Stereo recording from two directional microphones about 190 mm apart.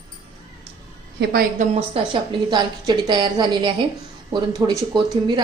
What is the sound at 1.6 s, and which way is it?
A woman's voice, 30° right (ahead or behind).